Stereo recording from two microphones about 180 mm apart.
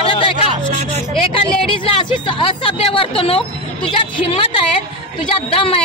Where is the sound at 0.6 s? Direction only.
40° right (ahead or behind).